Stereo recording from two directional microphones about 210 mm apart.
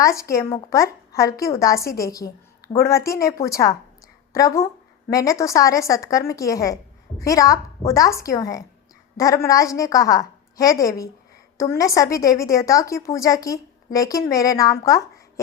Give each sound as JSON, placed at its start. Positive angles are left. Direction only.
{"t": 0.0, "sound": "a woman's voice", "side_deg": 15}